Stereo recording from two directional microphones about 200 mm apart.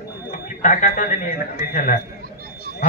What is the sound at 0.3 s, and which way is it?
A man's voice, 40° left (ahead or behind).